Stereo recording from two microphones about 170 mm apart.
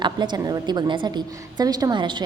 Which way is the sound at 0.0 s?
25° right (ahead or behind).